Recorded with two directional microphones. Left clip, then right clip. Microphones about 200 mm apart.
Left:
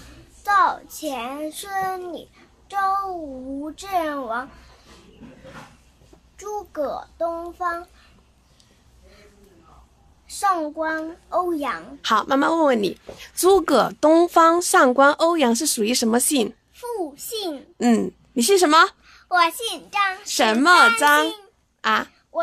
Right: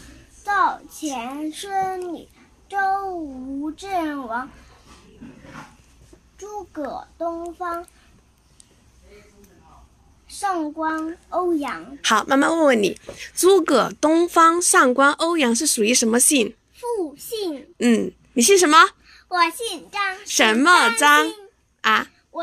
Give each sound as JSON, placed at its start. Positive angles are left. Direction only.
{"t": 0.4, "sound": "a sound", "side_deg": 20}
{"t": 1.1, "sound": "a child's voice", "side_deg": 20}
{"t": 3.7, "sound": "a child's voice", "side_deg": 25}
{"t": 6.9, "sound": "a child's voice", "side_deg": 20}
{"t": 10.4, "sound": "a child's voice", "side_deg": 20}
{"t": 12.0, "sound": "a woman's voice", "side_deg": 0}
{"t": 13.4, "sound": "speech", "side_deg": 15}
{"t": 16.8, "sound": "a child's voice", "side_deg": 25}
{"t": 18.3, "sound": "speech", "side_deg": 5}
{"t": 19.2, "sound": "a child's voice", "side_deg": 25}
{"t": 20.2, "sound": "a woman's voice", "side_deg": 5}